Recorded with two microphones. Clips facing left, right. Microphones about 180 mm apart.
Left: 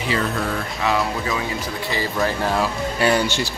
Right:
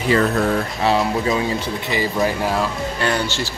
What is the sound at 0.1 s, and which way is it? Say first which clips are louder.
Speech: right 7 dB; 45° right (ahead or behind).